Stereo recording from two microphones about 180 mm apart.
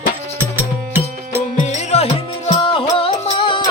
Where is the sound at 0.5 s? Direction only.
10° right (ahead or behind).